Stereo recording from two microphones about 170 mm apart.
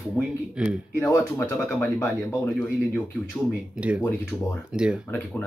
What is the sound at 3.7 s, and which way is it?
Speech, 5° right (ahead or behind).